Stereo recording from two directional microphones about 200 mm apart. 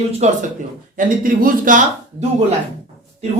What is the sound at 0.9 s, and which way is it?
Speech, 45° right (ahead or behind).